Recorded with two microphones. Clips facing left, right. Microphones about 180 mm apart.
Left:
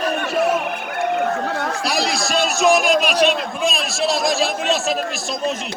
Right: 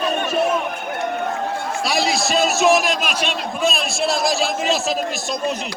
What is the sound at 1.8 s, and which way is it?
A man's voice, centre (ahead or behind).